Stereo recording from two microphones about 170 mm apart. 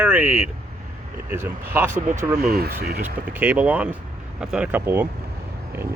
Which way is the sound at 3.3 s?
10° right (ahead or behind).